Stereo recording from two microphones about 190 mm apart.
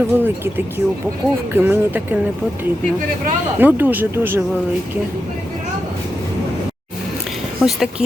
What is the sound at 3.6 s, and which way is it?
Speech, 10° right (ahead or behind).